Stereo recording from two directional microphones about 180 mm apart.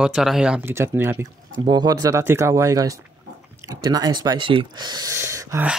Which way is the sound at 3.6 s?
20° right (ahead or behind).